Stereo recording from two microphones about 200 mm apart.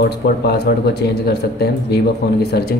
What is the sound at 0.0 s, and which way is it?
Speech, 55° left (ahead or behind).